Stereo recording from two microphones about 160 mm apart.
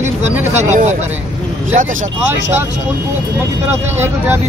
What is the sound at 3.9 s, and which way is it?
Speech, 15° right (ahead or behind).